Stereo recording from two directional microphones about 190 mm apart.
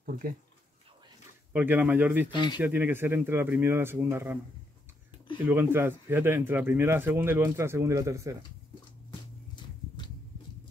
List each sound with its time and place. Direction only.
0.0 s speech: 45° right (ahead or behind)
1.5 s speech: 10° right (ahead or behind)
2.3 s speech: 25° left (ahead or behind)
2.6 s speech: 10° right (ahead or behind)
5.4 s speech: 10° right (ahead or behind)